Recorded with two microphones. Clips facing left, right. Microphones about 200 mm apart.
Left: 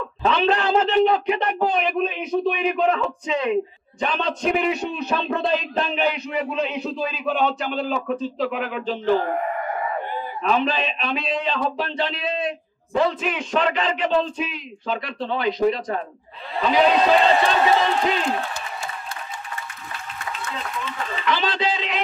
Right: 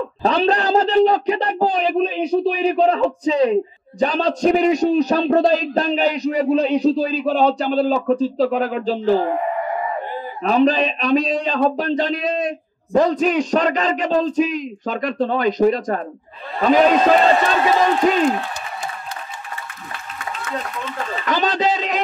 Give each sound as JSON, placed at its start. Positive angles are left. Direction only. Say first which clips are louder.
{"t": 0.2, "sound": "a man's voice", "louder": "right 2 dB", "side_deg": -35}
{"t": 10.4, "sound": "a man's voice", "louder": "right 7 dB", "side_deg": -40}
{"t": 21.2, "sound": "a man's voice", "louder": "right 4 dB", "side_deg": -45}